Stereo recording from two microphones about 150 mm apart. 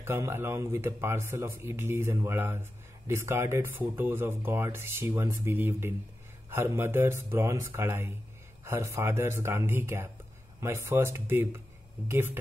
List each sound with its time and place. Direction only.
0.0 s speech: 15° right (ahead or behind)